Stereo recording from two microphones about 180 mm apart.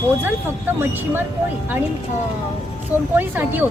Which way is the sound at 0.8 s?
10° right (ahead or behind).